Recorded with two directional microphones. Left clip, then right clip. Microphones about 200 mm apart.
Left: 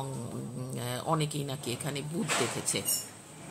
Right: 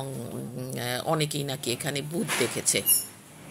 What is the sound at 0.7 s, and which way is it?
Speech, 5° right (ahead or behind).